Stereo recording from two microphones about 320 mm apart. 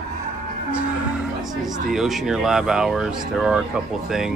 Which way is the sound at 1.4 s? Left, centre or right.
Centre.